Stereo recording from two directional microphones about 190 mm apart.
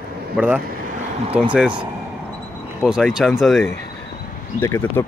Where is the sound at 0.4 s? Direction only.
5° right (ahead or behind).